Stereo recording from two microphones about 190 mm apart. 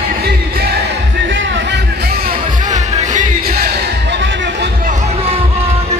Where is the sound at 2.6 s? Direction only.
40° right (ahead or behind); by 4.6 s 70° right (ahead or behind).